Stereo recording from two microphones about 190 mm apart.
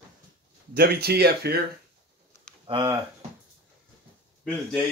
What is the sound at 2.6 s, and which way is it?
Speech, 25° right (ahead or behind).